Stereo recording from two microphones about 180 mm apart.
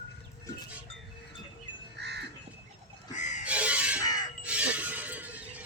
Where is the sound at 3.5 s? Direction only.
5° right (ahead or behind).